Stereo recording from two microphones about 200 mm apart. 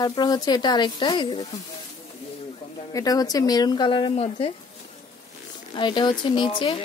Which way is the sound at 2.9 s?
20° left (ahead or behind).